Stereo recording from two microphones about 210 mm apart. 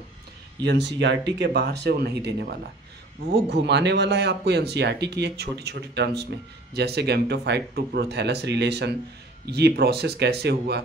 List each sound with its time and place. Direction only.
0.7 s speech: 55° right (ahead or behind)